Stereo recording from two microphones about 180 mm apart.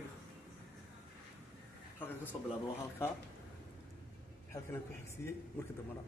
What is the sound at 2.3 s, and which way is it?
Speech, 25° left (ahead or behind).